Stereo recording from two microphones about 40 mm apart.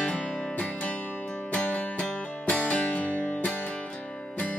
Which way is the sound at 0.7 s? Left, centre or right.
Left.